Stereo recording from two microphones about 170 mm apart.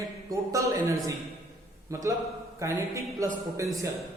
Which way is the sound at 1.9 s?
20° right (ahead or behind).